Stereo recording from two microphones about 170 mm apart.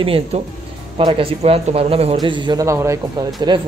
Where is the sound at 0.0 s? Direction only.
35° right (ahead or behind).